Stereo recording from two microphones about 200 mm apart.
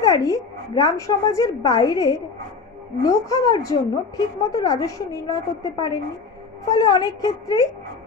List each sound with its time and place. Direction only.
0.0 s a woman's voice: 15° left (ahead or behind)